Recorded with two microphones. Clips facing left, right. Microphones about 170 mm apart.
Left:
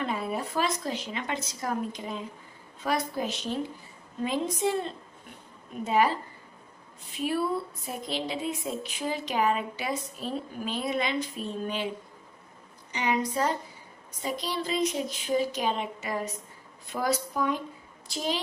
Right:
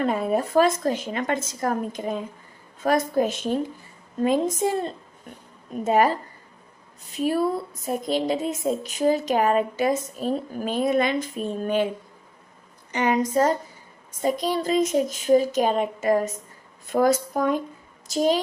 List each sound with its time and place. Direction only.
0.0 s a woman's voice: 45° right (ahead or behind)
12.9 s a woman's voice: 50° right (ahead or behind)